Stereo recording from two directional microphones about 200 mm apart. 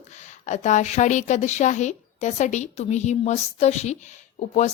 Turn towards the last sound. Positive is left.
turn(degrees=35)  # may be behind; listen again after turning